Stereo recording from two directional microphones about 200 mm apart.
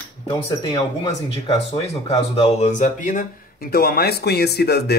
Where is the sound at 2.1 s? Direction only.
30° left (ahead or behind).